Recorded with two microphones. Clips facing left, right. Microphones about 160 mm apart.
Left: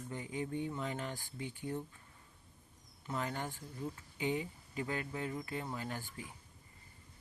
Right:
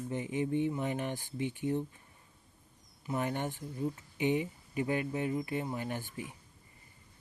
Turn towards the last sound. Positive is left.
turn(degrees=-20)  # may be behind; listen again after turning